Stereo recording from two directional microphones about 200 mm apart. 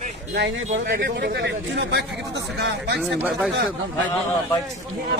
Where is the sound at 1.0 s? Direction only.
55° right (ahead or behind).